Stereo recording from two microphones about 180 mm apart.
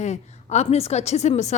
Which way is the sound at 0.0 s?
40° left (ahead or behind).